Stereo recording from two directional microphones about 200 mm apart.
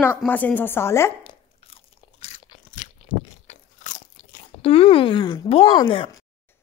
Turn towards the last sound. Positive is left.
turn(degrees=25)  # may be behind; listen again after turning